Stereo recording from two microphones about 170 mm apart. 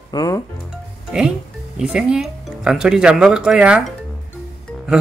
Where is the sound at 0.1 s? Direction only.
20° left (ahead or behind).